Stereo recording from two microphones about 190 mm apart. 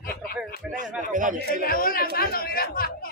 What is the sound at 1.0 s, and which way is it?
Speech, 45° right (ahead or behind).